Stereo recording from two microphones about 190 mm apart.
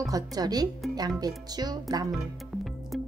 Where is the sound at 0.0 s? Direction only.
20° right (ahead or behind).